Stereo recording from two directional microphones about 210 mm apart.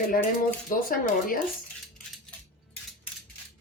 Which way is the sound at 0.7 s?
40° left (ahead or behind).